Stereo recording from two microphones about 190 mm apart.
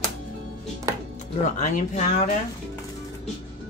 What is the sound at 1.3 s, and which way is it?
Speech, 40° left (ahead or behind).